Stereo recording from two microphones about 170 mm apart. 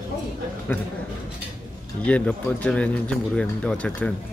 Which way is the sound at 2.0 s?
10° left (ahead or behind).